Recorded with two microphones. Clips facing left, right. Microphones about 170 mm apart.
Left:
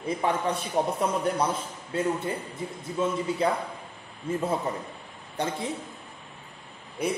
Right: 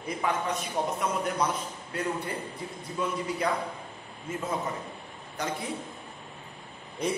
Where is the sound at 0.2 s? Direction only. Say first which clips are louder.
Left 1 dB; 30° left (ahead or behind).